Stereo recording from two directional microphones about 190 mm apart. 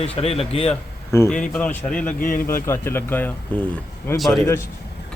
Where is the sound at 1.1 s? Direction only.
15° left (ahead or behind).